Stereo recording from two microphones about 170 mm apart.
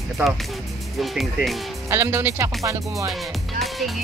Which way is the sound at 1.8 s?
15° right (ahead or behind).